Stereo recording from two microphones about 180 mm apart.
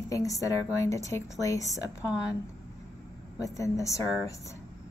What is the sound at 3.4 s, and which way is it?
Speech, 15° left (ahead or behind).